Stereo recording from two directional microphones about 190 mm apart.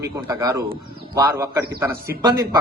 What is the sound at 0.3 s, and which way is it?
A man's voice, 15° right (ahead or behind).